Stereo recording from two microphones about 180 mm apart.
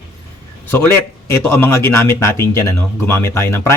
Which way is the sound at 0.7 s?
10° left (ahead or behind).